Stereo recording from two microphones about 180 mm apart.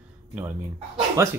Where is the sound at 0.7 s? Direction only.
20° right (ahead or behind).